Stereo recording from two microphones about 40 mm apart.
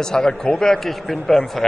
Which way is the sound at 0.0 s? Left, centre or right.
Centre.